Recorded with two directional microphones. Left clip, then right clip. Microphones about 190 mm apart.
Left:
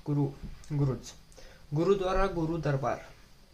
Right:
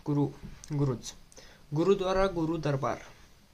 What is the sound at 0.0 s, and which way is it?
Speech, 20° right (ahead or behind).